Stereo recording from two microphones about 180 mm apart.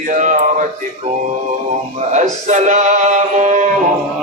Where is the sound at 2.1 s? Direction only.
40° right (ahead or behind).